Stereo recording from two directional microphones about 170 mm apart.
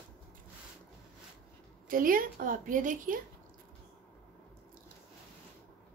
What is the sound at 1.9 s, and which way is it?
A woman's voice, 55° right (ahead or behind).